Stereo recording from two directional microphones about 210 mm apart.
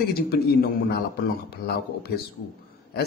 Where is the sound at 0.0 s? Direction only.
45° left (ahead or behind).